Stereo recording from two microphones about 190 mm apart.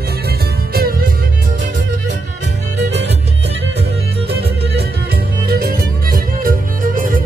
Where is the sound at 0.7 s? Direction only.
50° right (ahead or behind).